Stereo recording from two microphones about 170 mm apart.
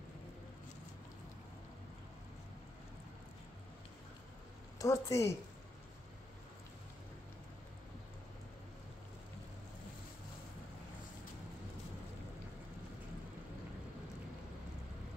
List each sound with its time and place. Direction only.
4.7 s a woman's voice: 20° left (ahead or behind)